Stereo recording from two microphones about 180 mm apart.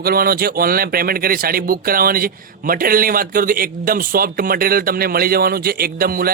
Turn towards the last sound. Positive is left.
turn(degrees=-55)  # may be behind; listen again after turning